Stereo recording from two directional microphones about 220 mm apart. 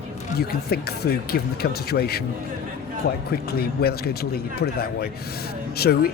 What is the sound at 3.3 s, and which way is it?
Speech, 45° left (ahead or behind).